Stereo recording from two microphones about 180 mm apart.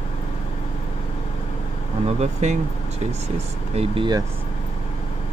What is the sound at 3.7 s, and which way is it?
Speech, 25° right (ahead or behind).